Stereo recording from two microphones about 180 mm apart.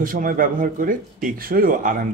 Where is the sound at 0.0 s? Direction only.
50° right (ahead or behind).